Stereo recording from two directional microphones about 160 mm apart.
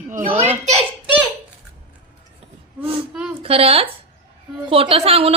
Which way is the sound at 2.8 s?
5° right (ahead or behind).